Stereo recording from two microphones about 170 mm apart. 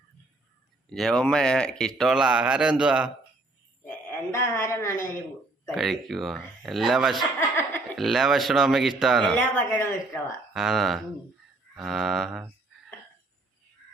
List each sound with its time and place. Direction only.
0.9 s speech: 5° left (ahead or behind)
4.3 s a man's voice: 15° left (ahead or behind)
5.7 s speech: centre (ahead or behind)
7.3 s chuckle: 15° left (ahead or behind)
7.9 s speech: centre (ahead or behind)
10.5 s speech: centre (ahead or behind)